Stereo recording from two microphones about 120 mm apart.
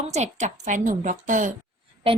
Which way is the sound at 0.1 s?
70° right (ahead or behind).